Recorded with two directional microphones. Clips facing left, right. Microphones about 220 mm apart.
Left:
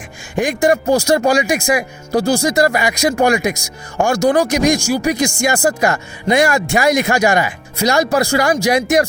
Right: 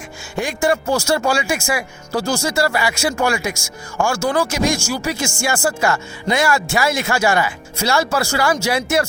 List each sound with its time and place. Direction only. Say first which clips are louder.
0.3 s speech: left 4 dB; 15° left (ahead or behind)